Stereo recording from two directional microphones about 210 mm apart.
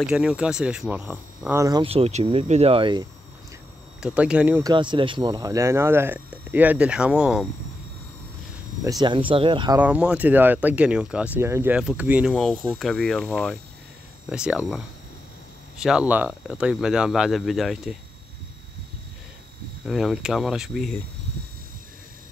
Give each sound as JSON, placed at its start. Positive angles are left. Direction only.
{"t": 0.0, "sound": "speech", "side_deg": -5}
{"t": 1.6, "sound": "speech", "side_deg": -20}
{"t": 4.0, "sound": "speech", "side_deg": -5}
{"t": 4.7, "sound": "speech", "side_deg": -25}
{"t": 8.8, "sound": "speech", "side_deg": -20}
{"t": 9.8, "sound": "speech", "side_deg": -5}
{"t": 15.8, "sound": "speech", "side_deg": -5}
{"t": 19.8, "sound": "speech", "side_deg": 0}